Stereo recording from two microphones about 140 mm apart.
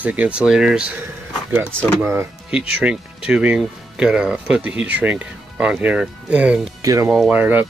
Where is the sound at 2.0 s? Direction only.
20° right (ahead or behind).